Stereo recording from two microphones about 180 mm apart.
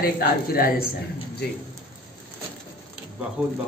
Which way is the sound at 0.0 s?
55° left (ahead or behind).